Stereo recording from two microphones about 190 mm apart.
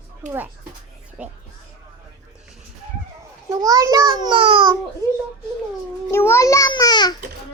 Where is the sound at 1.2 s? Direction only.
5° right (ahead or behind).